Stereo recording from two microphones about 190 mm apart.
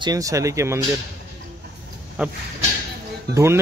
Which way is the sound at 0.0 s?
20° right (ahead or behind).